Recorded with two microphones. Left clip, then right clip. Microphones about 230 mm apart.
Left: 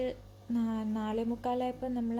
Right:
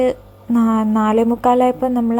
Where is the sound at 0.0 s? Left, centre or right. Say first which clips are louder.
Right 18 dB; right.